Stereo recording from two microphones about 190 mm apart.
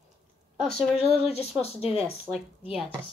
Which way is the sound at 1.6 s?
30° left (ahead or behind).